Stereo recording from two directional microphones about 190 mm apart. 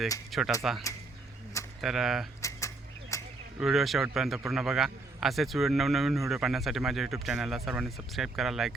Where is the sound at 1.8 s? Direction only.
Centre (ahead or behind).